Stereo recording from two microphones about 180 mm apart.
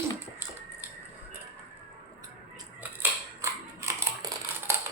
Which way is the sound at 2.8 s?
15° right (ahead or behind).